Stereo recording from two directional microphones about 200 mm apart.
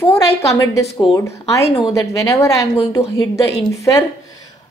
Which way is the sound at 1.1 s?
15° left (ahead or behind).